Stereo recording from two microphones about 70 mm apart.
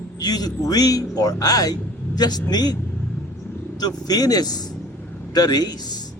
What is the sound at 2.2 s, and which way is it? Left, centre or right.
Speech, left.